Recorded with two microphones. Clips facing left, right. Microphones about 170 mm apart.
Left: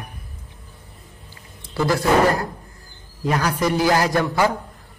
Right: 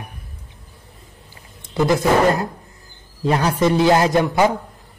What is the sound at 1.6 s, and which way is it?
A man's voice, 20° right (ahead or behind).